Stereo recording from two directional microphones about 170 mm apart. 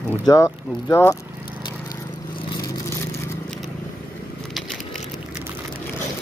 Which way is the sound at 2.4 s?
25° left (ahead or behind).